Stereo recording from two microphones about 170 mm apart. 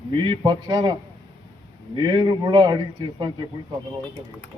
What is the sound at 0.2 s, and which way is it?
Speech, 25° right (ahead or behind).